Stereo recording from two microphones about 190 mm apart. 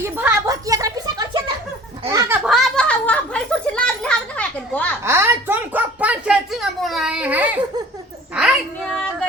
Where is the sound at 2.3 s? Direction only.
5° right (ahead or behind).